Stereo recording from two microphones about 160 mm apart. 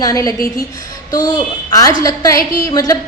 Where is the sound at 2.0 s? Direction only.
20° left (ahead or behind).